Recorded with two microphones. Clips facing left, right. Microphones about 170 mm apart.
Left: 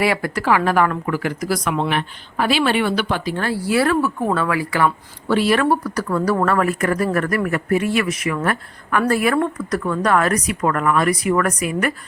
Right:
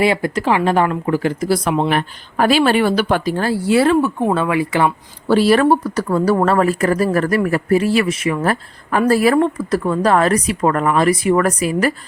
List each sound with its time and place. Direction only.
0.0 s speech: 25° right (ahead or behind)
1.9 s a woman's voice: 40° right (ahead or behind); by 4.9 s 25° right (ahead or behind)
5.3 s speech: 35° right (ahead or behind)